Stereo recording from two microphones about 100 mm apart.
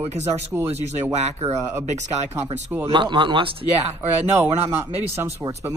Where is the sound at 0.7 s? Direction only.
90° right.